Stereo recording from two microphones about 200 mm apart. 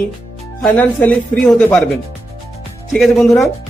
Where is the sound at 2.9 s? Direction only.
Centre (ahead or behind).